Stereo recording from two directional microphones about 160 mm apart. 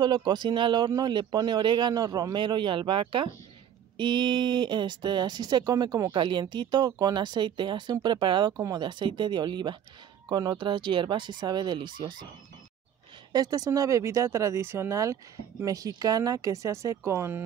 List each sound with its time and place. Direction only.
0.0 s speech: 25° right (ahead or behind)
13.3 s speech: 25° right (ahead or behind)